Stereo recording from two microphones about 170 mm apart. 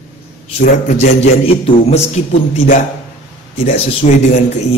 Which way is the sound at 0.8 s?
40° left (ahead or behind).